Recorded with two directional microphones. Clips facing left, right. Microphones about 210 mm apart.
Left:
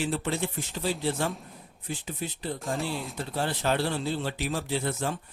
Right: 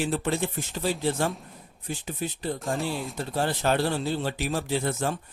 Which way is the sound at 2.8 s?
Centre (ahead or behind).